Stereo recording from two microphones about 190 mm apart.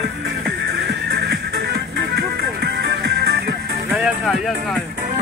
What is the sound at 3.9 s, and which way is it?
Music, centre (ahead or behind).